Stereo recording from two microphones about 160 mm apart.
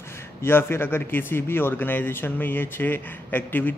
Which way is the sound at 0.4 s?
15° left (ahead or behind).